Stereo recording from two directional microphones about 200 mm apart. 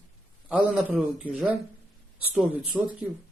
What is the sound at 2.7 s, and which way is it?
Speech, centre (ahead or behind).